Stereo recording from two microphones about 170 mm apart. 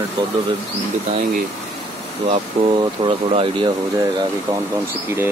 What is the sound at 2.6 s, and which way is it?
Speech, 35° right (ahead or behind).